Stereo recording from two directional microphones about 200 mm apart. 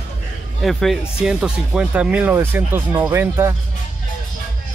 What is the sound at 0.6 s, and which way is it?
Speech, centre (ahead or behind).